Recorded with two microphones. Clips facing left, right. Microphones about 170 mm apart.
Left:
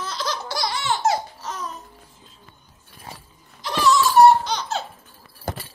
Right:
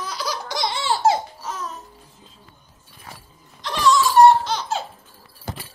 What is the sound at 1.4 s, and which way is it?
Music, 5° right (ahead or behind).